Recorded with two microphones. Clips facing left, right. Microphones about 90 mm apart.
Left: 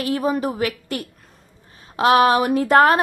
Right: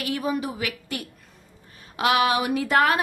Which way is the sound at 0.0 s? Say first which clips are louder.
Left 5 dB; 40° left (ahead or behind).